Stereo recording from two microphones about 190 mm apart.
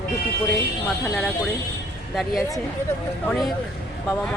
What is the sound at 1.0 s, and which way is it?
Speech, centre (ahead or behind).